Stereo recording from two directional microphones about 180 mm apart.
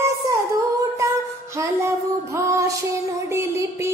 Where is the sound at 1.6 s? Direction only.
15° right (ahead or behind).